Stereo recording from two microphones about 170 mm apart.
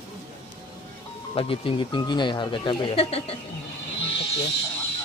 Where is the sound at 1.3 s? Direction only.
30° left (ahead or behind).